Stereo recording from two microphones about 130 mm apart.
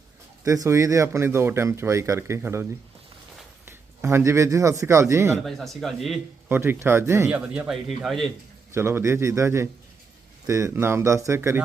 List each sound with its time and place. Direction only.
0.4 s speech: 25° right (ahead or behind)
3.7 s speech: 20° right (ahead or behind)
5.5 s speech: centre (ahead or behind)
6.5 s speech: 15° right (ahead or behind); by 8.3 s centre (ahead or behind)
8.7 s speech: 20° right (ahead or behind)